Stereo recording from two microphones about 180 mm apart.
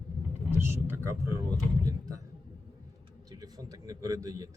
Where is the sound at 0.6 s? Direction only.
15° right (ahead or behind).